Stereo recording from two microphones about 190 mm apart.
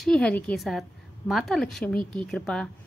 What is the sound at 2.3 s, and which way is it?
Speech, 5° left (ahead or behind).